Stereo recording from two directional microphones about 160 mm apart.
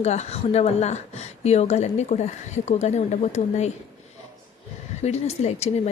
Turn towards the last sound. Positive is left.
turn(degrees=40)  # may be behind; listen again after turning